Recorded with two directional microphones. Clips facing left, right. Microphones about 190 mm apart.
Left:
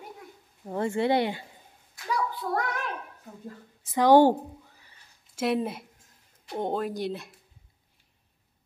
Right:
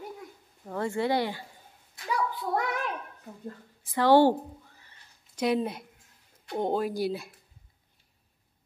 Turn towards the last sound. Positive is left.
turn(degrees=-5)  # may be behind; listen again after turning